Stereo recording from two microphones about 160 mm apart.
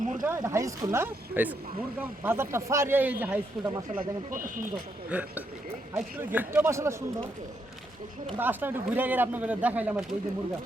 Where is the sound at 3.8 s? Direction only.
55° right (ahead or behind).